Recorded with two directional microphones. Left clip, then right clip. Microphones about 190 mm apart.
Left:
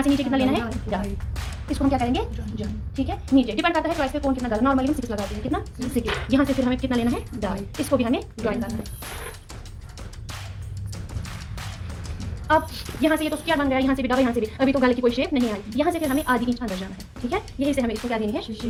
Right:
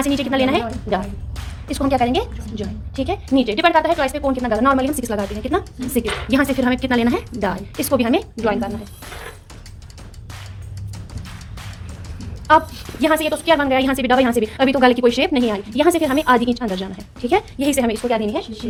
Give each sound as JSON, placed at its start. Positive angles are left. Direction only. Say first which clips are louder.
{"t": 0.0, "sound": "a woman's voice", "louder": "right 4 dB", "side_deg": -55}
{"t": 12.5, "sound": "a woman's voice", "louder": "right 7 dB", "side_deg": -55}